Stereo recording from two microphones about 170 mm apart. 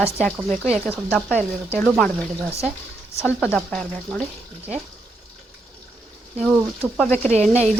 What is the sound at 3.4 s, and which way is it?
Speech, 5° left (ahead or behind).